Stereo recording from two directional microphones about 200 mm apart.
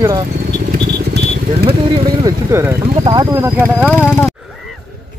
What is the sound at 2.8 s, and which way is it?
Speech, 30° right (ahead or behind).